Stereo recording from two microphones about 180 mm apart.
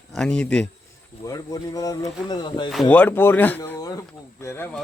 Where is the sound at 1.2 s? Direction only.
20° left (ahead or behind).